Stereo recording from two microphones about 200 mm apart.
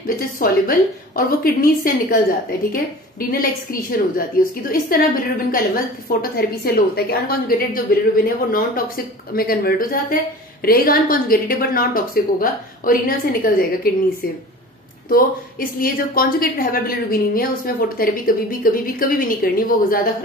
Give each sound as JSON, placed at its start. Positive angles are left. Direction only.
{"t": 0.1, "sound": "a woman's voice", "side_deg": 45}
{"t": 15.0, "sound": "a woman's voice", "side_deg": 45}